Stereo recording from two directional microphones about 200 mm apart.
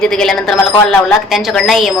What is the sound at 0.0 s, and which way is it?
A man's voice, 5° left (ahead or behind).